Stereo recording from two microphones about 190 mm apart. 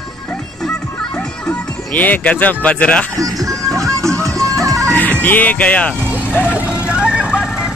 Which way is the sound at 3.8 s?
15° right (ahead or behind).